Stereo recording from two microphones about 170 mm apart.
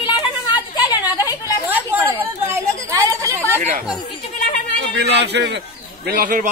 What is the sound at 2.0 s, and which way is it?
Speech, 15° right (ahead or behind).